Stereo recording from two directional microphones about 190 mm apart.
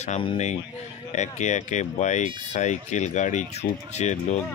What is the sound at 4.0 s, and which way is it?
Speech, 35° left (ahead or behind).